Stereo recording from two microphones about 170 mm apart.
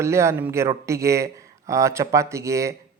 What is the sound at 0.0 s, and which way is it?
A man's voice, 15° right (ahead or behind).